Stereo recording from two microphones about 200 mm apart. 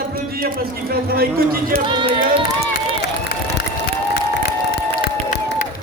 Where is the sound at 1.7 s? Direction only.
25° right (ahead or behind).